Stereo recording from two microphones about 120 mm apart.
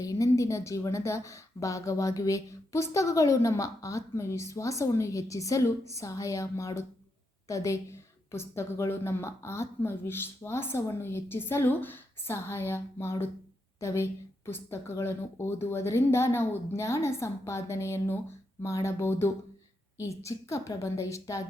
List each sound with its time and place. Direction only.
0.0 s a woman's voice: 30° left (ahead or behind)